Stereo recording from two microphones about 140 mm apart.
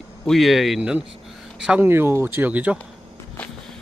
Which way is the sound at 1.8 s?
15° right (ahead or behind).